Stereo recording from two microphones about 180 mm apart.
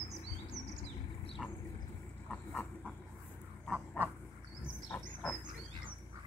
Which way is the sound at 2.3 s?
5° left (ahead or behind).